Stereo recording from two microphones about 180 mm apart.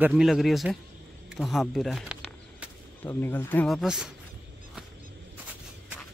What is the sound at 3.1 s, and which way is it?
Speech, 10° left (ahead or behind).